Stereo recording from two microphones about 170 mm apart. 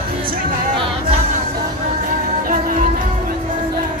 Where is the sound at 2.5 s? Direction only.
50° right (ahead or behind).